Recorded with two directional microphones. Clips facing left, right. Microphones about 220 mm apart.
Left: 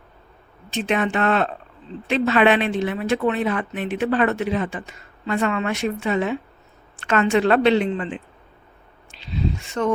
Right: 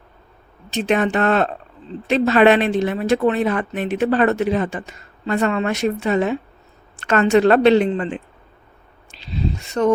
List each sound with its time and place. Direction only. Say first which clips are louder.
0.7 s a woman's voice: right 4 dB; 40° right (ahead or behind)